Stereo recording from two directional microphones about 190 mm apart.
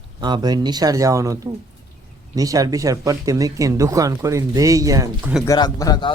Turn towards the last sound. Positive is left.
turn(degrees=20)  # may be behind; listen again after turning